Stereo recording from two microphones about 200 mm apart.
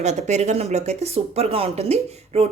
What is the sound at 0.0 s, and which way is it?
Speech, 35° right (ahead or behind).